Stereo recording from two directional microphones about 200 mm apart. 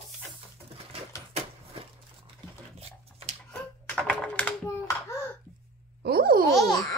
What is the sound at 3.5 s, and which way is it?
Hands, 5° left (ahead or behind).